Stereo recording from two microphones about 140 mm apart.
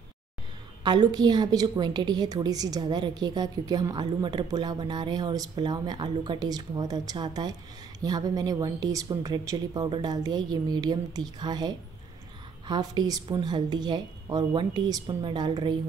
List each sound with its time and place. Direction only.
0.8 s a woman's voice: 30° right (ahead or behind)